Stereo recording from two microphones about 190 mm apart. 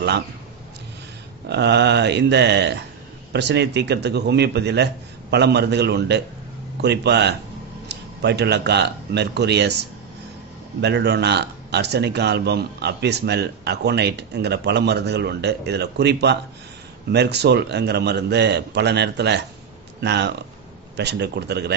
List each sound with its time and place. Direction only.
1.5 s speech: 60° right (ahead or behind)